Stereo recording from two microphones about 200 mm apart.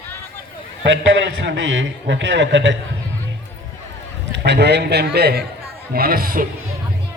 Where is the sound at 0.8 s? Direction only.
65° right (ahead or behind).